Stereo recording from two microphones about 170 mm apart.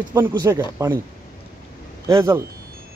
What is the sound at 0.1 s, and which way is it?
Speech, 15° right (ahead or behind).